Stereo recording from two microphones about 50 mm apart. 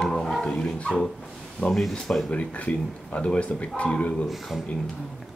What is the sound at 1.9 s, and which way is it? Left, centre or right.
Speech, centre.